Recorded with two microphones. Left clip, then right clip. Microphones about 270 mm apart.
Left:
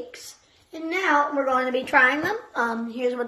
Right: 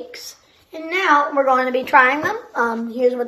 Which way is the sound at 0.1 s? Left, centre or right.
Centre.